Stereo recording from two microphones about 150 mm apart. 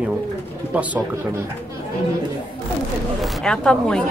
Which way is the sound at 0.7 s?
10° right (ahead or behind).